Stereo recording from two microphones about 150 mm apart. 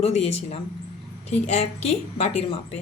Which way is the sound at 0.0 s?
45° left (ahead or behind).